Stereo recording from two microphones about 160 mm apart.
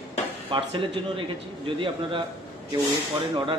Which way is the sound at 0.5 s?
35° right (ahead or behind).